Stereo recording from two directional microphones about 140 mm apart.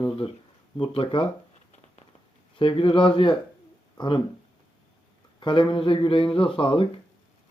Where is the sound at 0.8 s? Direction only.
40° left (ahead or behind).